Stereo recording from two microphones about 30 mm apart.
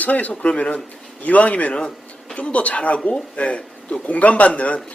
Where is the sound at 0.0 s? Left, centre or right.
Left.